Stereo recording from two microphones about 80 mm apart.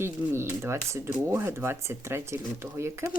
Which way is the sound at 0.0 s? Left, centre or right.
Right.